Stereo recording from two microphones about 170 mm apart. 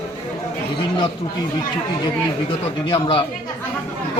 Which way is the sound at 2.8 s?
30° left (ahead or behind).